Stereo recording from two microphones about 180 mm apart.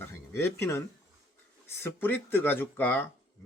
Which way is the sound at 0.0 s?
15° left (ahead or behind).